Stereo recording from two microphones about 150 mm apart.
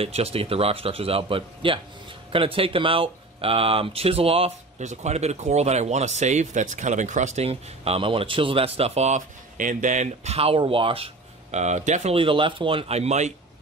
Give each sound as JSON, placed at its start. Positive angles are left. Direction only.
{"t": 0.0, "sound": "speech", "side_deg": -40}
{"t": 11.5, "sound": "speech", "side_deg": -50}